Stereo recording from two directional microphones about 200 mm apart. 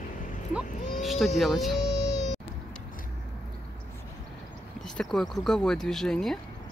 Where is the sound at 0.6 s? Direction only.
Centre (ahead or behind).